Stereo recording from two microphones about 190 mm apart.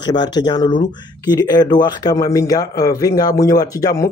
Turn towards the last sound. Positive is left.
turn(degrees=15)  # may be behind; listen again after turning